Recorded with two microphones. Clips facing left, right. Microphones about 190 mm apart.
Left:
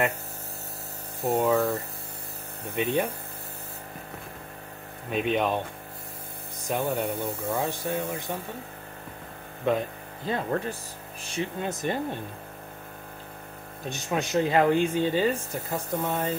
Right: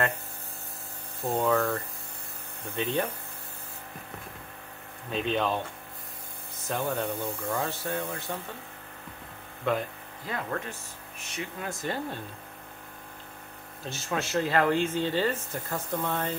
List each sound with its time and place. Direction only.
1.2 s speech: 15° left (ahead or behind)
5.1 s speech: 15° left (ahead or behind)
6.7 s speech: 10° left (ahead or behind)
10.2 s speech: 30° left (ahead or behind)
13.8 s speech: 15° left (ahead or behind)